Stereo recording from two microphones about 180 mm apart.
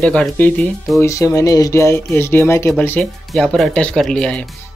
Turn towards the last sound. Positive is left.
turn(degrees=5)  # may be behind; listen again after turning